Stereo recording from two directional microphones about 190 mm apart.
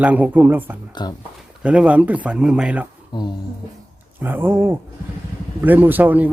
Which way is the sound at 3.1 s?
25° left (ahead or behind).